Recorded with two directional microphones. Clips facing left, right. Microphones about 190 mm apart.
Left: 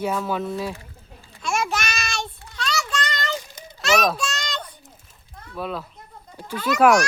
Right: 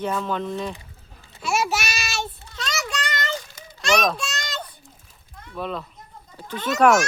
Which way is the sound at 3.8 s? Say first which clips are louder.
Left 1 dB; 5° left (ahead or behind).